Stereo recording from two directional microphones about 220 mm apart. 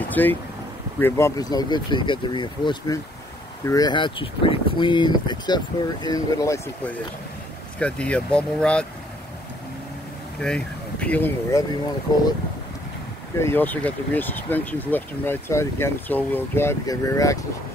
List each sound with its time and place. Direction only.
0.1 s speech: 10° left (ahead or behind)
10.4 s speech: 5° left (ahead or behind)
13.4 s speech: 10° left (ahead or behind)